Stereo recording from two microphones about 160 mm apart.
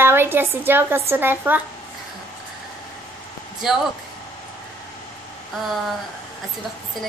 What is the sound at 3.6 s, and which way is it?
Speech, 5° right (ahead or behind).